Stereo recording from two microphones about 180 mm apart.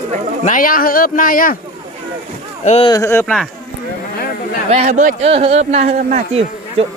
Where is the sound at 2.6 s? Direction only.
35° left (ahead or behind).